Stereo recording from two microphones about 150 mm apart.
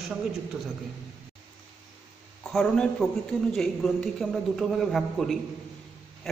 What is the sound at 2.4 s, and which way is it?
A man's voice, 5° left (ahead or behind).